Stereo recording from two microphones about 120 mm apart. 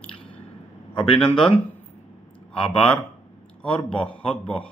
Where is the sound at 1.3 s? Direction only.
50° left (ahead or behind).